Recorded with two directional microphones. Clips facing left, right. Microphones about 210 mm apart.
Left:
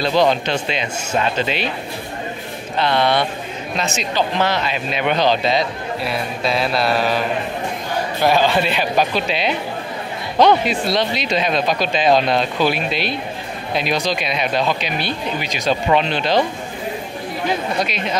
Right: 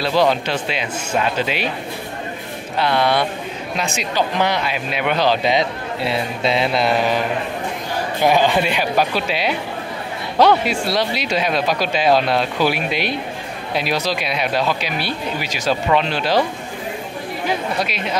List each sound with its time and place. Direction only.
0.0 s speech: 5° right (ahead or behind)
2.8 s speech: 10° right (ahead or behind)
5.5 s a man's voice: 20° right (ahead or behind)
8.2 s speech: 15° right (ahead or behind)
10.6 s speech: 10° right (ahead or behind)
17.7 s speech: 5° right (ahead or behind)